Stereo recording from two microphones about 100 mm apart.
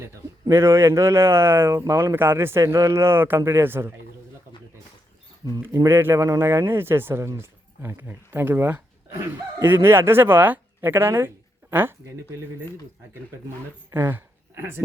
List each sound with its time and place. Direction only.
0.0 s speech: 25° right (ahead or behind)
5.7 s speech: 30° right (ahead or behind)
6.1 s speech: 35° right (ahead or behind)
13.9 s speech: 20° right (ahead or behind)